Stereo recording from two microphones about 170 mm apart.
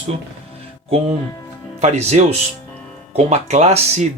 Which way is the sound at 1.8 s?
40° right (ahead or behind).